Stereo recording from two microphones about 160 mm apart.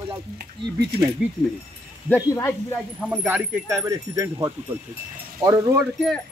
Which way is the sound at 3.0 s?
10° right (ahead or behind).